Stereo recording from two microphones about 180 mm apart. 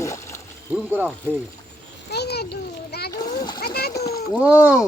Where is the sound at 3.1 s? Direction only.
20° left (ahead or behind).